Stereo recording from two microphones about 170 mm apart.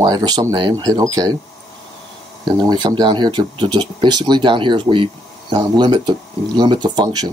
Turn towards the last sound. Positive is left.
turn(degrees=-25)  # may be behind; listen again after turning